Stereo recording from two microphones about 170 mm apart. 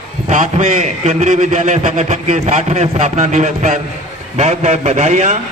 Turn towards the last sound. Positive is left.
turn(degrees=-45)  # may be behind; listen again after turning